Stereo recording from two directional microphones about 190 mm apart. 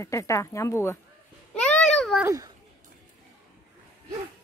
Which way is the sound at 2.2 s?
15° right (ahead or behind).